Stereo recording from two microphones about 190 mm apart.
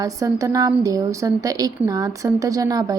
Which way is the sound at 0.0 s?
15° right (ahead or behind).